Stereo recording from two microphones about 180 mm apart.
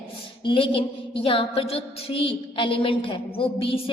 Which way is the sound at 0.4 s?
30° left (ahead or behind).